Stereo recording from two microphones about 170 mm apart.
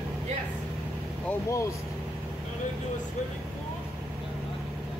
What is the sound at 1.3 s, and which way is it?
Speech, 15° left (ahead or behind).